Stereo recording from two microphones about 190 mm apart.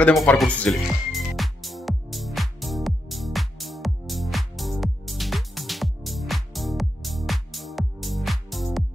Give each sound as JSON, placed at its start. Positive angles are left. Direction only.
{"t": 0.4, "sound": "music", "side_deg": 5}